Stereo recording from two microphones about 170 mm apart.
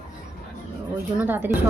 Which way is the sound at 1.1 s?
10° right (ahead or behind).